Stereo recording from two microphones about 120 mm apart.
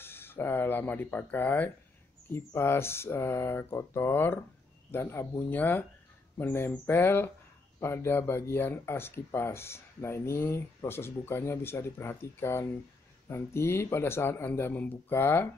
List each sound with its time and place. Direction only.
0.0 s speech: 20° left (ahead or behind)